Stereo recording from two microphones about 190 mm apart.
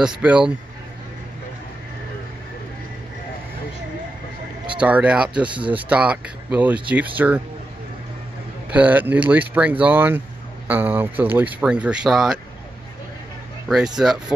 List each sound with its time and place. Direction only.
0.0 s speech: 5° right (ahead or behind)
4.6 s speech: 5° right (ahead or behind)
8.6 s speech: 10° right (ahead or behind)
13.9 s speech: 5° right (ahead or behind)